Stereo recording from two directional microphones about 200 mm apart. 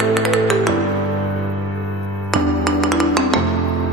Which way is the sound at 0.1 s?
Centre (ahead or behind).